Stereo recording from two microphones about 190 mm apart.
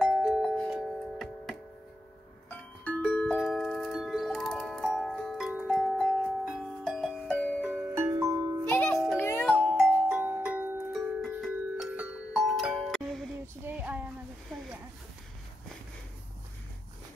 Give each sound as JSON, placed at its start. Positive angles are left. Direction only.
{"t": 0.0, "sound": "music", "side_deg": 0}
{"t": 2.8, "sound": "music", "side_deg": 5}
{"t": 7.9, "sound": "glockenspiel", "side_deg": -15}
{"t": 8.6, "sound": "music", "side_deg": 10}
{"t": 9.5, "sound": "music", "side_deg": -5}
{"t": 13.7, "sound": "music", "side_deg": -10}